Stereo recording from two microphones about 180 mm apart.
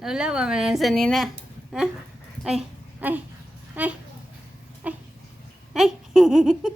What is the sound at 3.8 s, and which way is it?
Speech, 10° right (ahead or behind).